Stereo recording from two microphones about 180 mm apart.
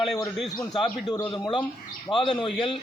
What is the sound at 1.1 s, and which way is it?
Speech, 20° left (ahead or behind).